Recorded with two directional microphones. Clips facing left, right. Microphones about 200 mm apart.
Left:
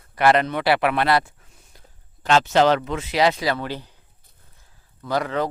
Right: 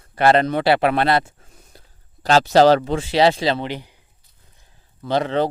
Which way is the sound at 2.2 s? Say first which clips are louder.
Right 4 dB; 35° right (ahead or behind).